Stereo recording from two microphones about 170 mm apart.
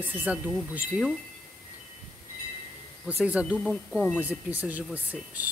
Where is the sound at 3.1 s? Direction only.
10° right (ahead or behind).